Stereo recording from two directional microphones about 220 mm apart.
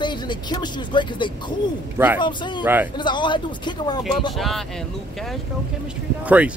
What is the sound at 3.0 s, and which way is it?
Speech, 20° left (ahead or behind).